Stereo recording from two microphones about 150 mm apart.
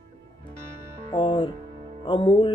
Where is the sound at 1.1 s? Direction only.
35° left (ahead or behind).